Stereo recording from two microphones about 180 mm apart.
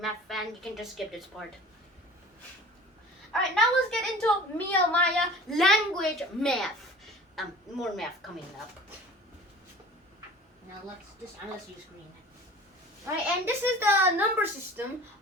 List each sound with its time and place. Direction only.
0.0 s a woman's voice: centre (ahead or behind)
3.3 s a woman's voice: 5° left (ahead or behind)
13.1 s speech: 15° right (ahead or behind)